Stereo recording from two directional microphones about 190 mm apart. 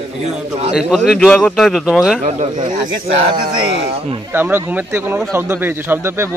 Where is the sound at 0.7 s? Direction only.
Centre (ahead or behind).